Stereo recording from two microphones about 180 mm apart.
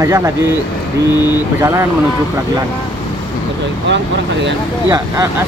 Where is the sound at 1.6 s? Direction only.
15° right (ahead or behind).